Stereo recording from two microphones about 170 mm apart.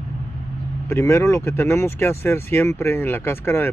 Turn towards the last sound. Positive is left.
turn(degrees=15)  # may be behind; listen again after turning